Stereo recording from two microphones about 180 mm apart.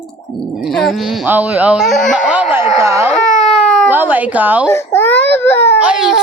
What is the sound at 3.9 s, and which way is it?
Speech, 10° right (ahead or behind).